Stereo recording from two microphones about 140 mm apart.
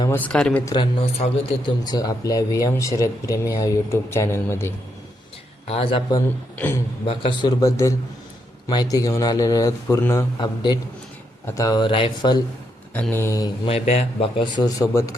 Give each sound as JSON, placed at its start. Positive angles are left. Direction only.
{"t": 0.1, "sound": "speech", "side_deg": 10}
{"t": 0.6, "sound": "speech", "side_deg": 30}
{"t": 1.2, "sound": "speech", "side_deg": 70}
{"t": 1.6, "sound": "speech", "side_deg": 30}
{"t": 5.6, "sound": "speech", "side_deg": 45}
{"t": 6.6, "sound": "speech", "side_deg": 15}
{"t": 7.0, "sound": "speech", "side_deg": 40}
{"t": 10.3, "sound": "speech", "side_deg": 35}
{"t": 12.9, "sound": "speech", "side_deg": 10}
{"t": 13.7, "sound": "speech", "side_deg": 45}